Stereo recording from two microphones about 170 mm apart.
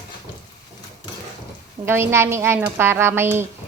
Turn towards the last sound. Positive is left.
turn(degrees=-15)  # may be behind; listen again after turning